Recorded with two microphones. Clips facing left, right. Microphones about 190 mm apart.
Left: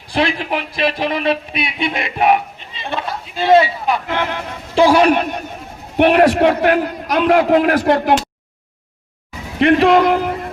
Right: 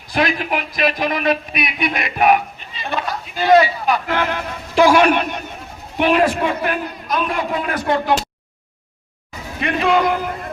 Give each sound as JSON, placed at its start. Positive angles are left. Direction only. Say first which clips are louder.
{"t": 0.1, "sound": "a man's voice", "louder": "left 1 dB", "side_deg": 30}
{"t": 6.0, "sound": "a man's voice", "louder": "left 5 dB", "side_deg": 65}
{"t": 9.6, "sound": "speech", "louder": "left 6 dB", "side_deg": 60}